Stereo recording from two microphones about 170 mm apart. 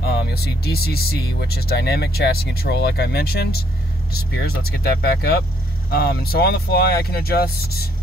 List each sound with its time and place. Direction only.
0.2 s speech: 65° left (ahead or behind)